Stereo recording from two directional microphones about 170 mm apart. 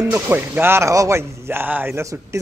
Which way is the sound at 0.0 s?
15° right (ahead or behind).